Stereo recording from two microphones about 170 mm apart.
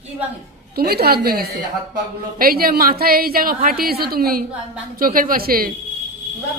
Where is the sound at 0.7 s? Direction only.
65° right (ahead or behind).